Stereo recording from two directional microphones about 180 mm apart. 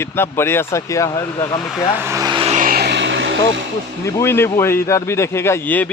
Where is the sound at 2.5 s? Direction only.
50° right (ahead or behind); by 3.3 s 85° right.